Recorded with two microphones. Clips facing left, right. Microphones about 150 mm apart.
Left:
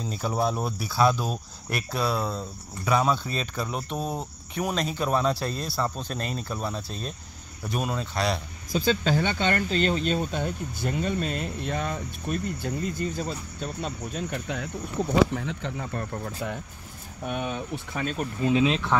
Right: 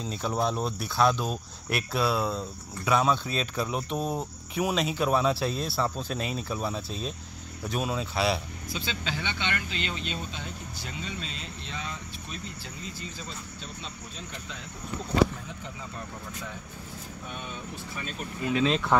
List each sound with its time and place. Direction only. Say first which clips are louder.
0.0 s cricket: left 2 dB; 5° left (ahead or behind)
8.7 s speech: left 11 dB; 45° left (ahead or behind); by 15.9 s 70° left (ahead or behind)
17.3 s speech: left 10 dB; 65° left (ahead or behind)
18.7 s cricket: even; centre (ahead or behind)